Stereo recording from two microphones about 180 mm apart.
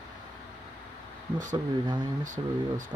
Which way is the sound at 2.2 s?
45° right (ahead or behind).